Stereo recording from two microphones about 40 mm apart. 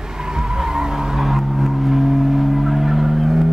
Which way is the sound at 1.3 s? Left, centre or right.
Centre.